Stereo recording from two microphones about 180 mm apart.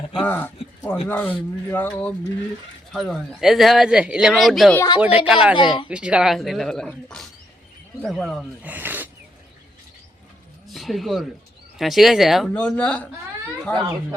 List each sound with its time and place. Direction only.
0.1 s speech: 5° left (ahead or behind)
2.9 s speech: centre (ahead or behind)
5.5 s speech: 25° left (ahead or behind)
5.9 s speech: 5° right (ahead or behind)
10.7 s speech: centre (ahead or behind)